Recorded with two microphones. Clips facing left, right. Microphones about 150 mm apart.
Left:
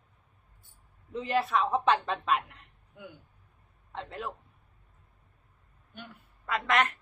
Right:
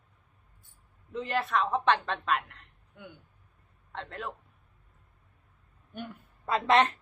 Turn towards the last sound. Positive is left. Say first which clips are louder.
# right 4 dB
turn(degrees=-30)  # may be behind; listen again after turning